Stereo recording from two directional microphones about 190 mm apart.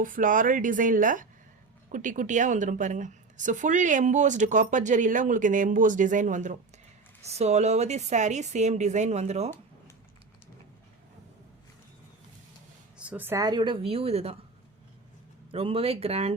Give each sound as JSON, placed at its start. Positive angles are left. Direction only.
{"t": 0.0, "sound": "a woman's voice", "side_deg": -45}
{"t": 13.0, "sound": "speech", "side_deg": -10}
{"t": 15.5, "sound": "a woman's voice", "side_deg": -30}